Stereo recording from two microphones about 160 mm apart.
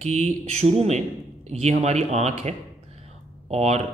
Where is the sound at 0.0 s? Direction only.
45° right (ahead or behind).